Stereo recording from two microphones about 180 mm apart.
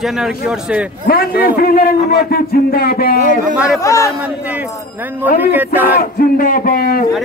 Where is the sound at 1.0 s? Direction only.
55° left (ahead or behind).